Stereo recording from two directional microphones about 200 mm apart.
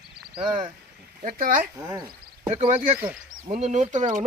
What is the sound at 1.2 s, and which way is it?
Speech, 40° right (ahead or behind).